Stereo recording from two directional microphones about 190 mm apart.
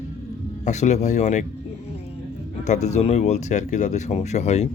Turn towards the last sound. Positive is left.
turn(degrees=35)  # may be behind; listen again after turning